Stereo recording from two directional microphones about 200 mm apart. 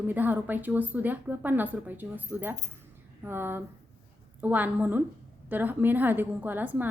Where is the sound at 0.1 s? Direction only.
10° right (ahead or behind).